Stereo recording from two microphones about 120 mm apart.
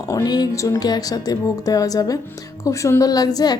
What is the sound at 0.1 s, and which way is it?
A woman's voice, 35° left (ahead or behind).